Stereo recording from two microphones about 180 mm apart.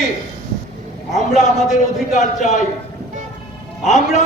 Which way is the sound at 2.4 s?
40° left (ahead or behind).